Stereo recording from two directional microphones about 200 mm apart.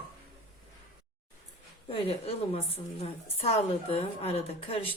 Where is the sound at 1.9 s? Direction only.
30° left (ahead or behind).